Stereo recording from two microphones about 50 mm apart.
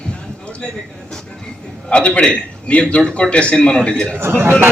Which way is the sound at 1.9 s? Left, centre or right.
Left.